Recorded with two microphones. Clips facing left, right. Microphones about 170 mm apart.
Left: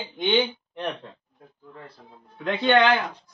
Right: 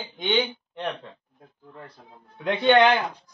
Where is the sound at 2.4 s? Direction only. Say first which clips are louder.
Right 1 dB; 15° right (ahead or behind).